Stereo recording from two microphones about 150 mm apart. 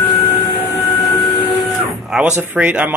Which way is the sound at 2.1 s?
10° right (ahead or behind).